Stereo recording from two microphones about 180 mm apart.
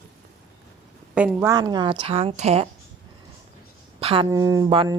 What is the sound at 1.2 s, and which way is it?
A woman's voice, 10° right (ahead or behind).